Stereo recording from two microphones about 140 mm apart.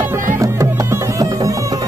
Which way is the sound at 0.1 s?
20° right (ahead or behind).